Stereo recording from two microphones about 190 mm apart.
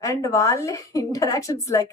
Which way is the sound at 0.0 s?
15° left (ahead or behind).